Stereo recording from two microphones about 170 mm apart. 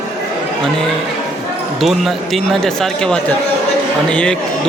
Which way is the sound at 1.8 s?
Centre (ahead or behind).